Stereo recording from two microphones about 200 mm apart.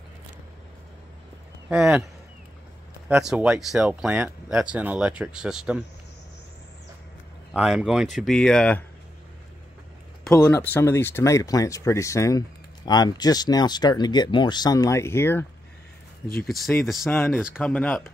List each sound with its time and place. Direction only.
1.7 s speech: 5° right (ahead or behind)
3.1 s speech: 5° right (ahead or behind)
7.5 s speech: 5° right (ahead or behind)
10.2 s speech: 5° left (ahead or behind)
16.4 s speech: centre (ahead or behind)
17.1 s speech: 10° left (ahead or behind)